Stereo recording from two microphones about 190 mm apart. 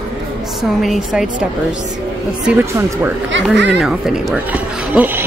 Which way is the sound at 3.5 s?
65° right (ahead or behind).